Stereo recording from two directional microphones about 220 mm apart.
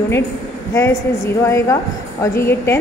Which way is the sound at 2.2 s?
10° left (ahead or behind).